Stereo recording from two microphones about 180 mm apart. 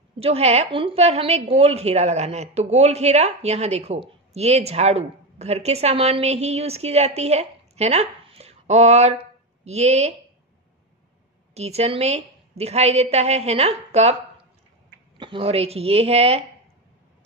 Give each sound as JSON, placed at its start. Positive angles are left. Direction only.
{"t": 0.2, "sound": "a woman's voice", "side_deg": -35}
{"t": 11.5, "sound": "a woman's voice", "side_deg": -35}
{"t": 15.1, "sound": "a woman's voice", "side_deg": -30}